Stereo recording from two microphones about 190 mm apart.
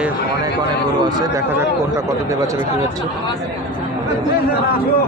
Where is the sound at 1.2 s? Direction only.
15° right (ahead or behind).